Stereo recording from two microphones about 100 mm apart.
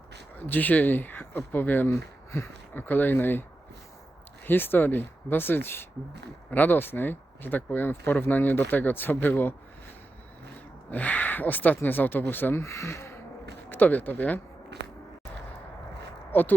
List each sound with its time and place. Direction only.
0.3 s speech: 15° left (ahead or behind)
4.4 s speech: 20° left (ahead or behind)
10.9 s speech: 15° left (ahead or behind)
16.3 s speech: 20° left (ahead or behind)